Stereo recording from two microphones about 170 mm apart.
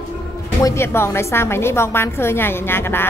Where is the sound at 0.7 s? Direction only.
15° left (ahead or behind).